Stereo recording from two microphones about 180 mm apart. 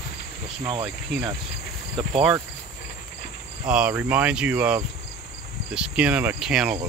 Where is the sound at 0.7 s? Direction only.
30° right (ahead or behind).